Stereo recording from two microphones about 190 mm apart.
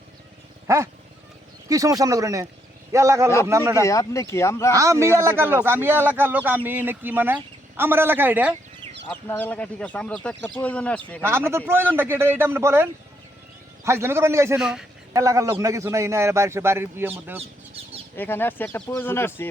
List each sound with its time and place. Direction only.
0.7 s a man's voice: 15° right (ahead or behind)
3.8 s speech: 15° left (ahead or behind)
4.7 s a man's voice: 15° right (ahead or behind)
9.4 s speech: 5° left (ahead or behind)
11.2 s a man's voice: 10° right (ahead or behind)
14.6 s speech: 5° right (ahead or behind)
15.1 s a man's voice: 15° right (ahead or behind)
17.3 s a sound: 30° right (ahead or behind)
18.2 s speech: 10° left (ahead or behind)